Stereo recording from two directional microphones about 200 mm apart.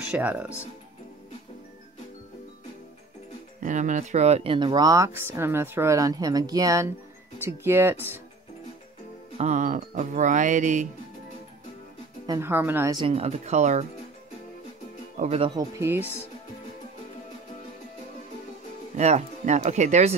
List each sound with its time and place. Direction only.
0.1 s speech: 5° right (ahead or behind)
3.6 s speech: 40° right (ahead or behind); by 8.2 s 10° right (ahead or behind)
9.4 s speech: 40° right (ahead or behind)
12.3 s speech: 10° right (ahead or behind)
13.0 s speech: 30° right (ahead or behind)
15.1 s speech: 30° right (ahead or behind)
15.5 s speech: 15° right (ahead or behind)
18.9 s speech: 35° right (ahead or behind)